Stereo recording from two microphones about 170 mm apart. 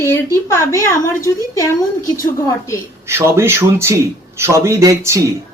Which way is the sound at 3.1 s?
15° right (ahead or behind).